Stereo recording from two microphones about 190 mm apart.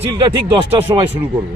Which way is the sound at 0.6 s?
25° right (ahead or behind).